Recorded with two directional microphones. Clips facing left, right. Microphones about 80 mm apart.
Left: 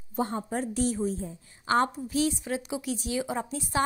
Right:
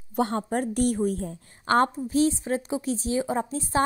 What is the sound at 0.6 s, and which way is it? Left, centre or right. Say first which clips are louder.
A woman's voice: right 3 dB; right.